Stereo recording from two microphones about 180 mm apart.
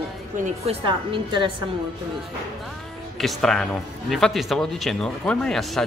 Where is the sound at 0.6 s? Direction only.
30° right (ahead or behind).